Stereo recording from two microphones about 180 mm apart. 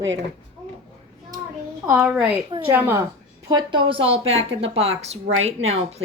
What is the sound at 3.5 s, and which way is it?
Speech, 25° right (ahead or behind).